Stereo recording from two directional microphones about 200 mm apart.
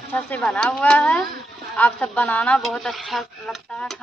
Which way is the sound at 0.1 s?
5° left (ahead or behind).